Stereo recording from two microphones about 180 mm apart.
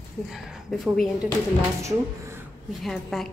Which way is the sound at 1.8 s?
15° right (ahead or behind).